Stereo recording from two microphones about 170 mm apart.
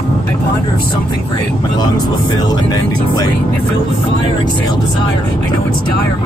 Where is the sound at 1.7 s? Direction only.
25° left (ahead or behind).